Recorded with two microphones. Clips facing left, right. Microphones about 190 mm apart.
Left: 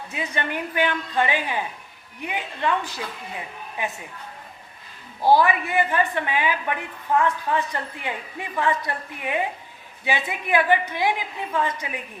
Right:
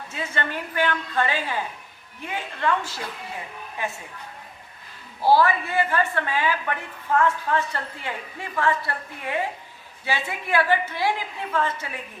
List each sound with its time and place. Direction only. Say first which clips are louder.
0.1 s a woman's voice: left 1 dB; 15° left (ahead or behind)
5.2 s a woman's voice: left 1 dB; 15° left (ahead or behind)